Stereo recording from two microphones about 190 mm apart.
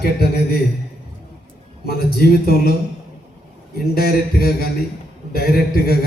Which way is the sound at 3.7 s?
55° left (ahead or behind).